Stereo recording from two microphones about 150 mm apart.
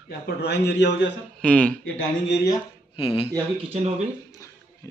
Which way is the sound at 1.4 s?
10° left (ahead or behind).